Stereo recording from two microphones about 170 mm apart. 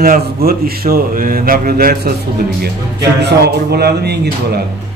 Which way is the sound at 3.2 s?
75° right (ahead or behind).